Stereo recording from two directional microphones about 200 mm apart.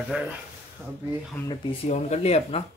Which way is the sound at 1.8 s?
35° left (ahead or behind).